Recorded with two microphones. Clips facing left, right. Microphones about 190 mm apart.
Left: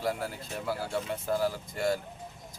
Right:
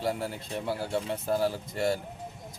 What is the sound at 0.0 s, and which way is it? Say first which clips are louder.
Speech: right 1 dB; 25° right (ahead or behind).